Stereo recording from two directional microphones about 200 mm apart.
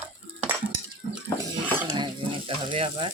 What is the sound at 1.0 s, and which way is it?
Water, 50° right (ahead or behind).